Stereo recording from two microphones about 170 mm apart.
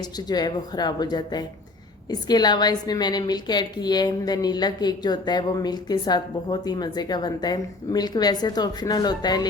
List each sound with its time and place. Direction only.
0.0 s a woman's voice: 25° left (ahead or behind)